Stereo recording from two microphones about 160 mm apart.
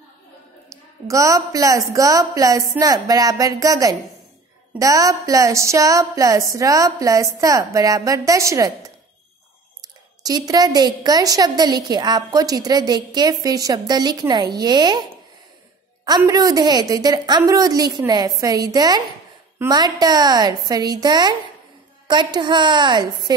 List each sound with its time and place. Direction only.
1.0 s a woman's voice: 20° right (ahead or behind)
10.2 s a woman's voice: 25° right (ahead or behind)
16.3 s a woman's voice: 25° right (ahead or behind)